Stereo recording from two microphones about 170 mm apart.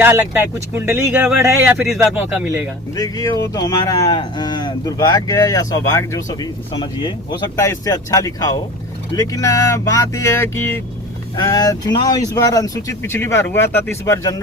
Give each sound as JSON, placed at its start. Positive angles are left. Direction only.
{"t": 0.0, "sound": "speech", "side_deg": -10}
{"t": 2.9, "sound": "speech", "side_deg": 20}